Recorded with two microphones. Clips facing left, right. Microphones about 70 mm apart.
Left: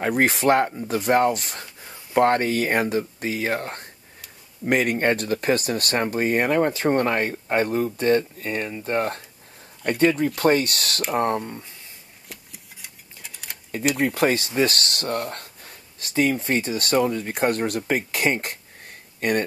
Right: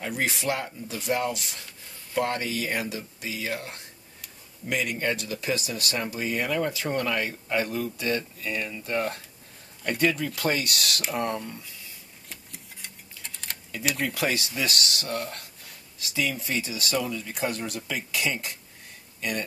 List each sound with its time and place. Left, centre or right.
0.0 s speech: left
12.3 s a sound: centre
14.0 s speech: left